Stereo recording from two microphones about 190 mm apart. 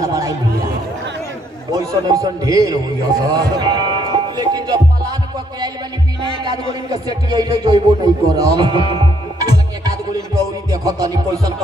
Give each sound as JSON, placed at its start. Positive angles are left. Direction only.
{"t": 0.0, "sound": "chatter", "side_deg": -20}
{"t": 1.7, "sound": "a man's voice", "side_deg": -20}
{"t": 3.3, "sound": "music", "side_deg": -20}
{"t": 6.7, "sound": "speech", "side_deg": -20}
{"t": 10.7, "sound": "music", "side_deg": -20}